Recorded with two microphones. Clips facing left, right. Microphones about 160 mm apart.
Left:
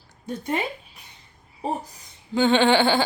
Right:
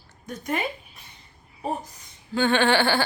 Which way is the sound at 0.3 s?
30° left (ahead or behind).